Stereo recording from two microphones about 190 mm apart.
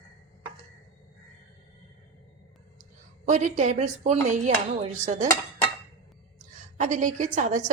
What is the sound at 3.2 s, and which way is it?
A woman's voice, 40° right (ahead or behind).